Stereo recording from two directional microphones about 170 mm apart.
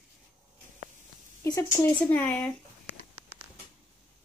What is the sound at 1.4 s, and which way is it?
A woman's voice, 15° left (ahead or behind).